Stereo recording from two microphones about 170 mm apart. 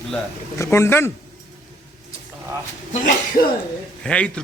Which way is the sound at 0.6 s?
15° left (ahead or behind).